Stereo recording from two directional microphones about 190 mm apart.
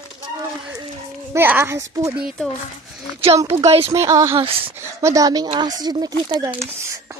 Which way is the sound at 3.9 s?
15° right (ahead or behind).